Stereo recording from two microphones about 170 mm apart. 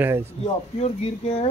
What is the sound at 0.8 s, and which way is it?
Speech, 40° left (ahead or behind).